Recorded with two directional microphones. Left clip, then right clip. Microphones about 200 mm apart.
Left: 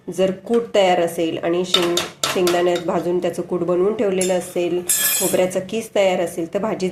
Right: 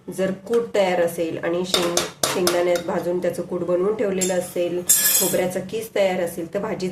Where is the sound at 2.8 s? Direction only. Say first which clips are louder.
Left 3 dB; 20° left (ahead or behind).